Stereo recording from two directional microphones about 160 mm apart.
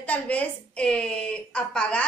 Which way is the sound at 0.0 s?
10° left (ahead or behind).